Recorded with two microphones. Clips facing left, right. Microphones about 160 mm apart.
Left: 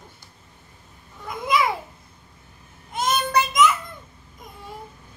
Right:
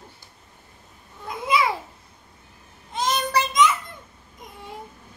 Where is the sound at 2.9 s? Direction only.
30° right (ahead or behind).